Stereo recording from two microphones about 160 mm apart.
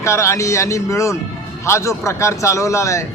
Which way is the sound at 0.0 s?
20° left (ahead or behind).